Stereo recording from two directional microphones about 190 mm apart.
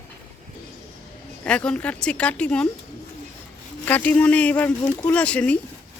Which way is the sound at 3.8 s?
10° left (ahead or behind).